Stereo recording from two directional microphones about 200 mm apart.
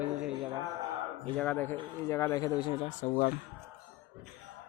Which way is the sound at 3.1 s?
45° left (ahead or behind).